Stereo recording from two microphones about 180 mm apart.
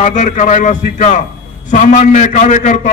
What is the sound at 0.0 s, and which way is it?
A man's voice, 45° left (ahead or behind).